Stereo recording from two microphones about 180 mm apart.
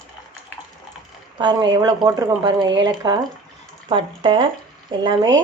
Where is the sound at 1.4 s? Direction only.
25° right (ahead or behind).